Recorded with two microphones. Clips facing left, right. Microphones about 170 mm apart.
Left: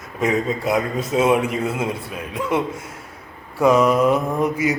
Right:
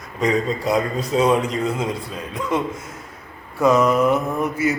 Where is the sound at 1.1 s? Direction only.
10° left (ahead or behind).